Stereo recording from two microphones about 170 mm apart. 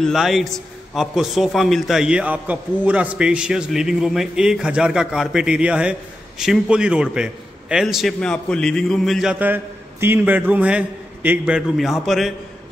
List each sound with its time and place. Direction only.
0.0 s a man's voice: centre (ahead or behind)